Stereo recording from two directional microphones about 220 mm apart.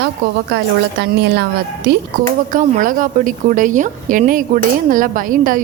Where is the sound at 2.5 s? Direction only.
35° right (ahead or behind).